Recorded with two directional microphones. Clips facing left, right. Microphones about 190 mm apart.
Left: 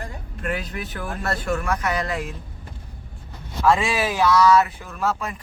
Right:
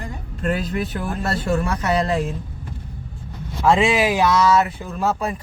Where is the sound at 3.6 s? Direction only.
20° right (ahead or behind).